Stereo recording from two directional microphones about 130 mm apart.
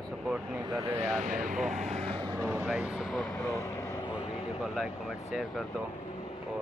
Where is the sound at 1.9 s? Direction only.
50° right (ahead or behind).